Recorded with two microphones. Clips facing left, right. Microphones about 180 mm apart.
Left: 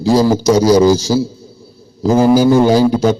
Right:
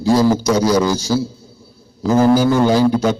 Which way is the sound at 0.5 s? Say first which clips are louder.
Left 6 dB; 35° left (ahead or behind).